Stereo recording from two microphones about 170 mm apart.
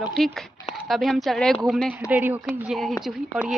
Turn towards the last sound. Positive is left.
turn(degrees=0)  # may be behind; listen again after turning